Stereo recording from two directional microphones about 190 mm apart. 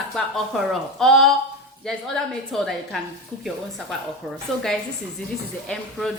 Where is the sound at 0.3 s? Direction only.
Centre (ahead or behind).